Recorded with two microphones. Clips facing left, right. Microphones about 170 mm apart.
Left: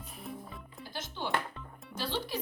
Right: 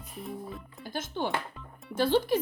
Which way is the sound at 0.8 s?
50° right (ahead or behind).